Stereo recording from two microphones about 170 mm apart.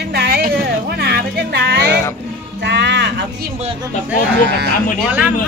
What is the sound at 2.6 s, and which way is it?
Music, 90° right.